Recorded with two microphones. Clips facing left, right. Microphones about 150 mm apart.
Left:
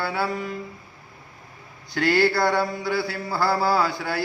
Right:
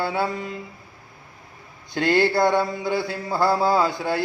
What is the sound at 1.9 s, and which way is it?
Mantra, 20° right (ahead or behind).